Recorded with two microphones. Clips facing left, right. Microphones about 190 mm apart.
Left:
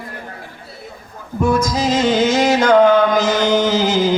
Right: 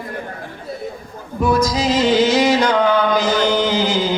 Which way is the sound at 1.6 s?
45° left (ahead or behind).